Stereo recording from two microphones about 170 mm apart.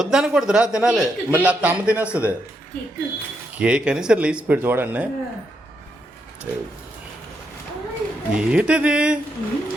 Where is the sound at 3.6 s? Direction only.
5° right (ahead or behind).